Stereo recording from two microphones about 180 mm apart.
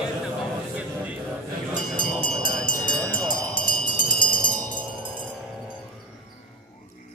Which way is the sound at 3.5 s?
50° left (ahead or behind).